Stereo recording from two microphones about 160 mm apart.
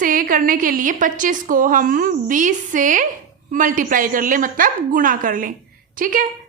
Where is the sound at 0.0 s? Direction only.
60° right (ahead or behind).